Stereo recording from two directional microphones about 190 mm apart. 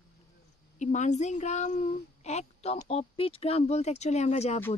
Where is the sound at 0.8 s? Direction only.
40° left (ahead or behind).